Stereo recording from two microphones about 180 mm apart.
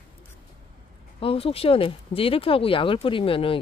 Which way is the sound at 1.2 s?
30° left (ahead or behind).